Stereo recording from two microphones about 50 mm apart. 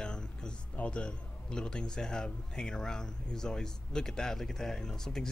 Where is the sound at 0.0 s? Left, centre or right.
Centre.